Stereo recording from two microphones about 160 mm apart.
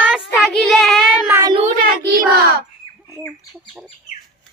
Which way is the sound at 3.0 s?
15° left (ahead or behind).